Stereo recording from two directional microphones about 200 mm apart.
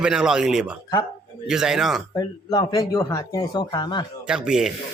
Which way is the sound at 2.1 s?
20° left (ahead or behind).